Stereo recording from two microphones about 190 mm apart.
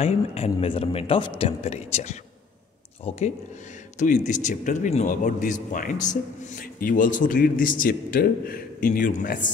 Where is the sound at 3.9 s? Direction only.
40° left (ahead or behind).